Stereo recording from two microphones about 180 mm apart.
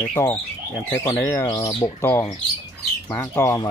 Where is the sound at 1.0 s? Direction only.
15° left (ahead or behind).